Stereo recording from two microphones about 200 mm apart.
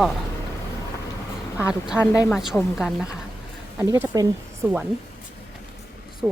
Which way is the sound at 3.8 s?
15° right (ahead or behind).